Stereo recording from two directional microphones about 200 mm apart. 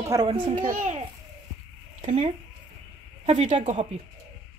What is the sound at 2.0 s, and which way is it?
Speech, 30° right (ahead or behind).